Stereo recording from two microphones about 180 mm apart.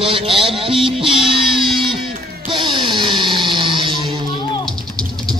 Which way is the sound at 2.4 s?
25° right (ahead or behind).